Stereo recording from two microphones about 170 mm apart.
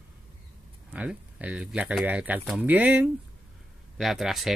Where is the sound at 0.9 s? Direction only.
10° right (ahead or behind).